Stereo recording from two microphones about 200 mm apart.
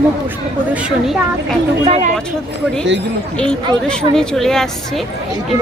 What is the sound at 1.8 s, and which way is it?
Speech, 30° right (ahead or behind).